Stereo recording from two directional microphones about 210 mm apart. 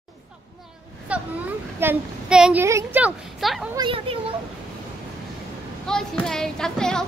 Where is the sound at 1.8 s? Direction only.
5° right (ahead or behind).